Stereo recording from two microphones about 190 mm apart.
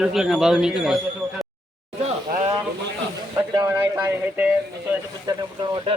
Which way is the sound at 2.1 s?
35° right (ahead or behind).